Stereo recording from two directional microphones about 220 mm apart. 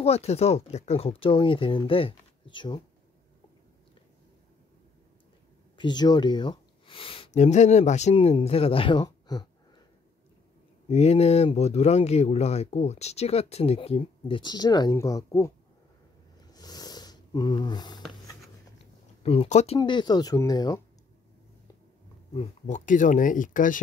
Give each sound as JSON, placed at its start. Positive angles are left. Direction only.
{"t": 0.0, "sound": "speech", "side_deg": 30}
{"t": 5.8, "sound": "speech", "side_deg": 20}
{"t": 10.9, "sound": "speech", "side_deg": 30}
{"t": 16.5, "sound": "a sound", "side_deg": 15}
{"t": 19.2, "sound": "speech", "side_deg": 30}
{"t": 22.3, "sound": "speech", "side_deg": 30}